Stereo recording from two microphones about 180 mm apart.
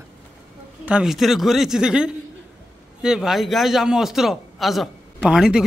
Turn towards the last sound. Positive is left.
turn(degrees=-5)  # may be behind; listen again after turning